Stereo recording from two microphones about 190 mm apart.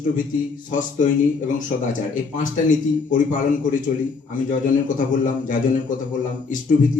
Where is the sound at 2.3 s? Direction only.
45° left (ahead or behind).